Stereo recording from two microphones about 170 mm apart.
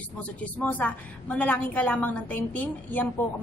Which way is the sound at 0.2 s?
10° left (ahead or behind).